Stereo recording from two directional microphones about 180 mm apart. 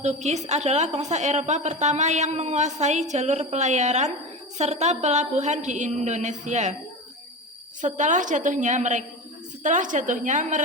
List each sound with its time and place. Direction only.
0.0 s a woman's voice: 40° right (ahead or behind)
7.8 s a woman's voice: 45° right (ahead or behind)